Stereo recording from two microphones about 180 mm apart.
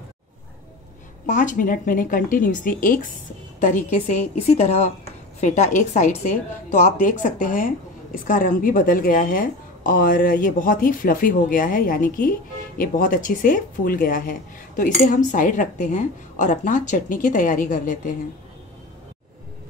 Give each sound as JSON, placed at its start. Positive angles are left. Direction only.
{"t": 1.2, "sound": "a woman's voice", "side_deg": 45}